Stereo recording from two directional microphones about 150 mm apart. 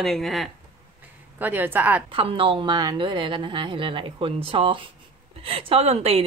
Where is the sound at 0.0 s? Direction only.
Centre (ahead or behind).